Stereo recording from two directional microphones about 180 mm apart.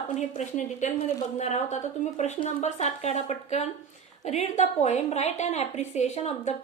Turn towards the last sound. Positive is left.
turn(degrees=40)  # may be behind; listen again after turning